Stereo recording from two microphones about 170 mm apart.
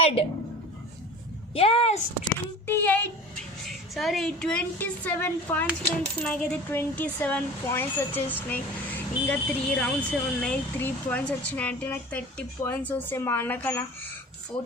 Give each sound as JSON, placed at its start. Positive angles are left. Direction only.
{"t": 0.0, "sound": "a woman's voice", "side_deg": 35}
{"t": 1.5, "sound": "speech", "side_deg": 35}
{"t": 2.6, "sound": "speech", "side_deg": 10}
{"t": 3.7, "sound": "a woman's voice", "side_deg": 0}